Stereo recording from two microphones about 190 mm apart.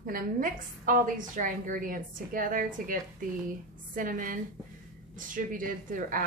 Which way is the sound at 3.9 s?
45° right (ahead or behind).